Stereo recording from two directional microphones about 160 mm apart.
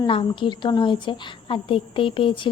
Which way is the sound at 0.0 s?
30° left (ahead or behind).